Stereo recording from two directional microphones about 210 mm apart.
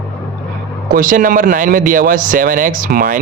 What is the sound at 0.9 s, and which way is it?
Speech, 40° right (ahead or behind).